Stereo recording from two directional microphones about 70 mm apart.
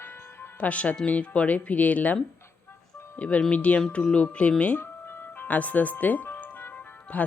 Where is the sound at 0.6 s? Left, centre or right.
Left.